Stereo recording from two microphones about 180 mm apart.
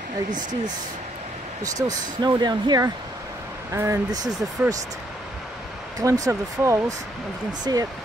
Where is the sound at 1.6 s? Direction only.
20° right (ahead or behind).